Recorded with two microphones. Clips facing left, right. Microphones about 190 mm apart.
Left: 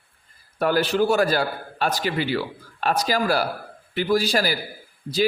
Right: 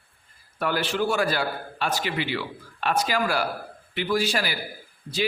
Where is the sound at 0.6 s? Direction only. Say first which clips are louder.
Left 5 dB; 40° left (ahead or behind).